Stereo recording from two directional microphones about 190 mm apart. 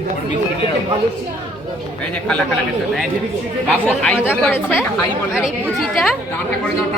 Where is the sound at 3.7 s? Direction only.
5° left (ahead or behind).